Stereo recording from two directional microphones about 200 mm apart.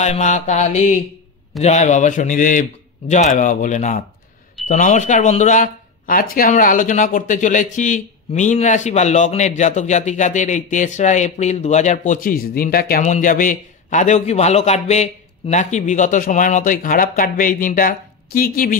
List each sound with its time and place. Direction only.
0.0 s speech: 35° left (ahead or behind)